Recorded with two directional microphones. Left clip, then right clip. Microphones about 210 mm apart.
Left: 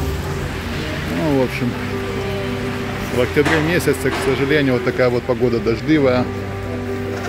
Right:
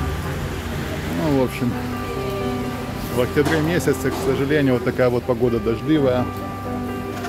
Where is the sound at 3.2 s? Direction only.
Centre (ahead or behind).